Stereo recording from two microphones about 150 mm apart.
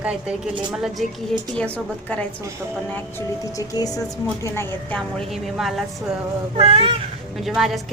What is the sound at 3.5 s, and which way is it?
A woman's voice, 25° left (ahead or behind).